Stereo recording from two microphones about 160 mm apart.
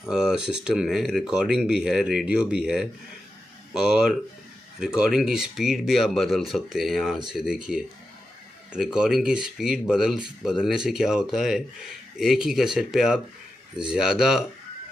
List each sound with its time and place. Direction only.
0.0 s speech: 5° right (ahead or behind)